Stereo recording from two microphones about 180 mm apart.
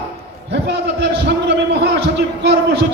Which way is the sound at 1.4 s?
65° right (ahead or behind).